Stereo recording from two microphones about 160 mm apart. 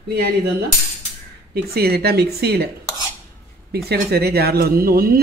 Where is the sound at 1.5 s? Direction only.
80° right.